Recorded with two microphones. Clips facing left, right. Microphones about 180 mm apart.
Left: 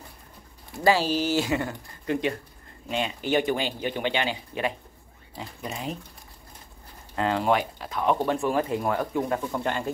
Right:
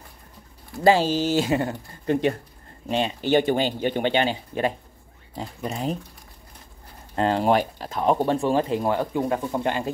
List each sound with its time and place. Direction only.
0.8 s speech: 20° right (ahead or behind)
1.5 s speech: 35° right (ahead or behind)
7.2 s speech: 35° right (ahead or behind)
8.4 s speech: 25° right (ahead or behind)